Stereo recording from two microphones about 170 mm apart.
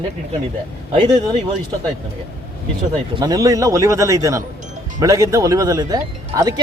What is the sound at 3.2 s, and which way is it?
Speech, 20° right (ahead or behind).